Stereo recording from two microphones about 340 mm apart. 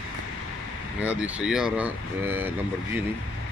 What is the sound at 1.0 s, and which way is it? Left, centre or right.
Speech, centre.